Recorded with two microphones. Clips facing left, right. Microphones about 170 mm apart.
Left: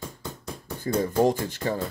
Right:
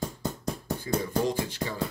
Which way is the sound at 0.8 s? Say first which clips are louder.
Left 6 dB; 50° left (ahead or behind).